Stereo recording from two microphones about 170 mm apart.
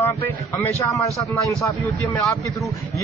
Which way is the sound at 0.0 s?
15° left (ahead or behind).